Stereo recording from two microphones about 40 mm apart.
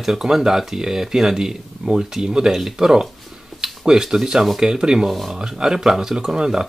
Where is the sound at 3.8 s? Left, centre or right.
Centre.